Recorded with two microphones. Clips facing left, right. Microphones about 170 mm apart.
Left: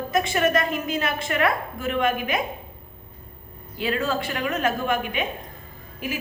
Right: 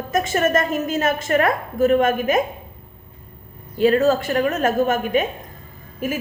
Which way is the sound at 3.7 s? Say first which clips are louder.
Right 9 dB; 45° right (ahead or behind).